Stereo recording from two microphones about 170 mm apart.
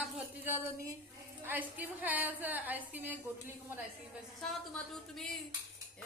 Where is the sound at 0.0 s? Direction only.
10° right (ahead or behind).